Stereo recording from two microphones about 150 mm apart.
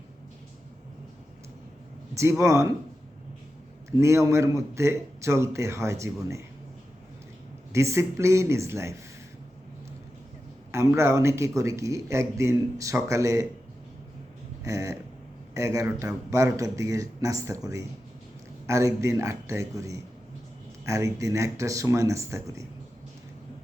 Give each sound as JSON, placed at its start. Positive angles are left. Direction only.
{"t": 2.4, "sound": "a man's voice", "side_deg": -20}
{"t": 3.9, "sound": "a man's voice", "side_deg": -20}
{"t": 7.7, "sound": "a man's voice", "side_deg": -20}
{"t": 10.7, "sound": "a man's voice", "side_deg": -15}
{"t": 14.6, "sound": "a sound", "side_deg": -20}
{"t": 15.5, "sound": "a man's voice", "side_deg": -20}